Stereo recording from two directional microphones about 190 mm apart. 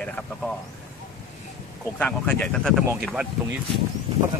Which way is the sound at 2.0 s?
10° left (ahead or behind).